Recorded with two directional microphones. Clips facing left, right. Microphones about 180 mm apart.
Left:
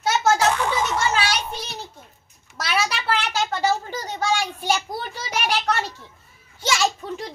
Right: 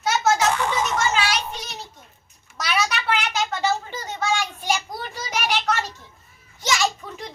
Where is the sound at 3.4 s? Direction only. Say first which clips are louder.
Left 1 dB; 30° left (ahead or behind).